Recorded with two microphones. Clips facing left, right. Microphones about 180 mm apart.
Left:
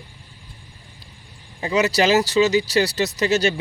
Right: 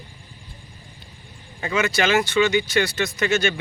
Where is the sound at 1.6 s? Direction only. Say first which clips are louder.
Left 3 dB; 30° left (ahead or behind).